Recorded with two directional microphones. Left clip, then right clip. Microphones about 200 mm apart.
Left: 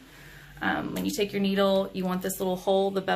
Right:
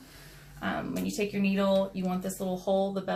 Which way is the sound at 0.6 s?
30° left (ahead or behind).